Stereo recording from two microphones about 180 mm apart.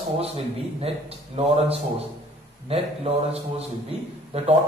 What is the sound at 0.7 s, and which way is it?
A man's voice, 35° right (ahead or behind).